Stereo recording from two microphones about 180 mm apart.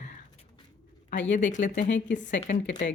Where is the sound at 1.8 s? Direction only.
85° left.